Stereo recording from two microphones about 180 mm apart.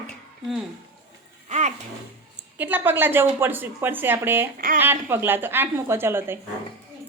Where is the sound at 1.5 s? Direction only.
40° right (ahead or behind).